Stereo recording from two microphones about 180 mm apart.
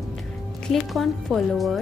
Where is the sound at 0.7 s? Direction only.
Centre (ahead or behind).